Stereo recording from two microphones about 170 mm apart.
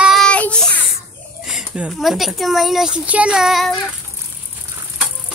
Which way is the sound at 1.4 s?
5° right (ahead or behind).